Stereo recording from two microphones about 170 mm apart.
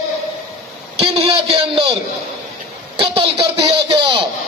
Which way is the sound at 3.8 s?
30° right (ahead or behind).